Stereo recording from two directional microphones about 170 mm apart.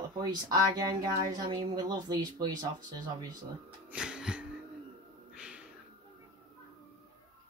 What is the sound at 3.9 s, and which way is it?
Music, 5° right (ahead or behind).